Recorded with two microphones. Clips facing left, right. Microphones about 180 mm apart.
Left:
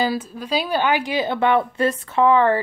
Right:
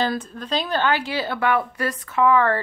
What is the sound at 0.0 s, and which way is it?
Speech, 5° left (ahead or behind).